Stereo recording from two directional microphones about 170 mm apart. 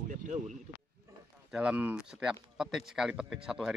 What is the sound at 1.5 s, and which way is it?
A man's voice, 5° right (ahead or behind).